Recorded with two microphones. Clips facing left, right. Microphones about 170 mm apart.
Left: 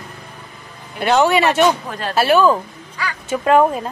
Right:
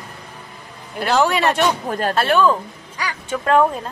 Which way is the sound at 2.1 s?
5° left (ahead or behind).